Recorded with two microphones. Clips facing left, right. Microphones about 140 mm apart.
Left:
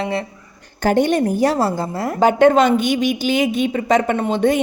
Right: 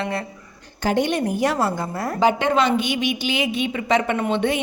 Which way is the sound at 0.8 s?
50° left (ahead or behind).